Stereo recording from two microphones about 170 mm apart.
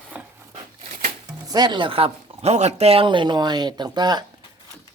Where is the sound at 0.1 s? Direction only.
10° right (ahead or behind).